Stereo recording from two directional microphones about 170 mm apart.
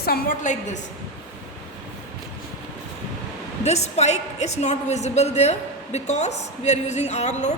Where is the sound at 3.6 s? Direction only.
40° left (ahead or behind).